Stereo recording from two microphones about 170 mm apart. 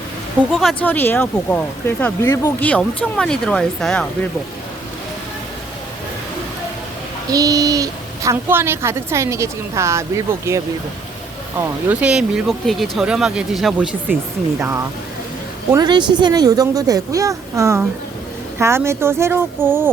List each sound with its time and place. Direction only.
0.5 s speech: centre (ahead or behind); by 2.6 s 20° left (ahead or behind)
2.6 s speech: 5° left (ahead or behind)
7.3 s a woman's voice: 20° right (ahead or behind)
15.7 s a woman's voice: 25° right (ahead or behind)